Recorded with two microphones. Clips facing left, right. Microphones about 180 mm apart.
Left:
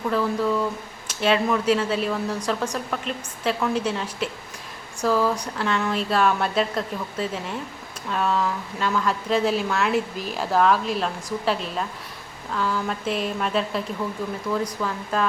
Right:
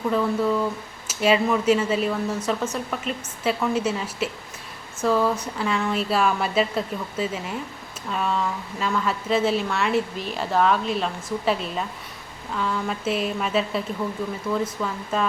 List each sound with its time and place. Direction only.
0.1 s a woman's voice: centre (ahead or behind)